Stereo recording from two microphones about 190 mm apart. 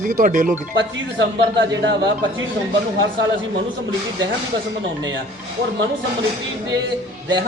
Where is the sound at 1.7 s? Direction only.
70° right (ahead or behind).